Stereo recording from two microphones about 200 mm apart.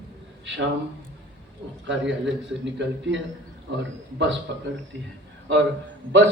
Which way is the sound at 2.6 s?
65° right (ahead or behind).